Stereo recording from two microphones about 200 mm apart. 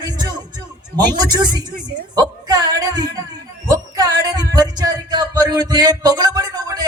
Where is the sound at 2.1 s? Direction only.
20° right (ahead or behind).